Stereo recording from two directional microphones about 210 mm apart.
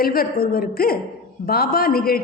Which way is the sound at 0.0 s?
45° left (ahead or behind).